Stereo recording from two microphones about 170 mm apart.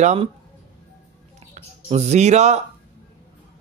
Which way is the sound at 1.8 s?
40° right (ahead or behind).